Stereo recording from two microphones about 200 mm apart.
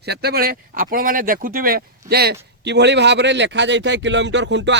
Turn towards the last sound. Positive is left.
turn(degrees=-65)  # may be behind; listen again after turning